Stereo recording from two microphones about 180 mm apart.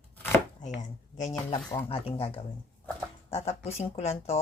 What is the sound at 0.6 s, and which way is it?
A woman's voice, 40° left (ahead or behind).